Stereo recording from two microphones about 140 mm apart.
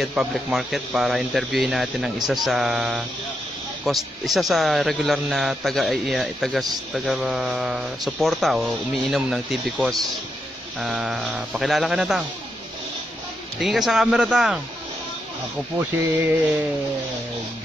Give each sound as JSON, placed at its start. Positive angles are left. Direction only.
{"t": 0.0, "sound": "speech", "side_deg": -5}
{"t": 13.6, "sound": "speech", "side_deg": 0}
{"t": 15.8, "sound": "speech", "side_deg": -15}